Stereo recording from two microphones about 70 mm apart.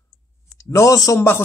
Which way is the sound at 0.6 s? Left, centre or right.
Left.